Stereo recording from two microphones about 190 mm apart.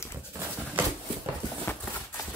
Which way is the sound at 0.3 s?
10° right (ahead or behind).